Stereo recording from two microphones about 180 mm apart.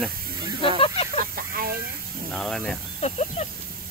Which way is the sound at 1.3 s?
55° right (ahead or behind).